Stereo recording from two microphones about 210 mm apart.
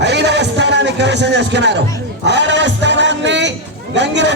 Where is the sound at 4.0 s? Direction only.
55° right (ahead or behind).